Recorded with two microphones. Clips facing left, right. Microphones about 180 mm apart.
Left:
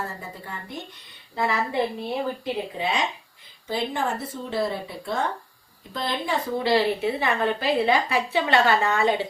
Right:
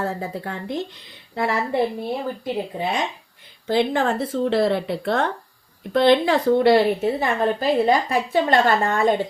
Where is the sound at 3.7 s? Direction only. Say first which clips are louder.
Right 7 dB; 85° right.